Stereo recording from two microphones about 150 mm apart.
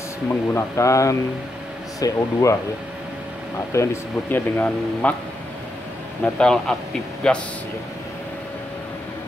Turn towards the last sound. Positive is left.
turn(degrees=5)  # may be behind; listen again after turning